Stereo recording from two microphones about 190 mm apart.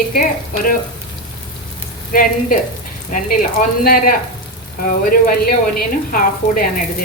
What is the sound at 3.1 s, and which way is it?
A woman's voice, 45° left (ahead or behind).